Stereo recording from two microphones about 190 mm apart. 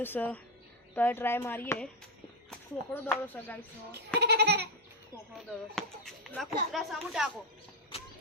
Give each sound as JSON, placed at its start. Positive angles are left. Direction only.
{"t": 0.0, "sound": "speech", "side_deg": 10}
{"t": 4.2, "sound": "goat", "side_deg": -60}
{"t": 5.7, "sound": "speech", "side_deg": 5}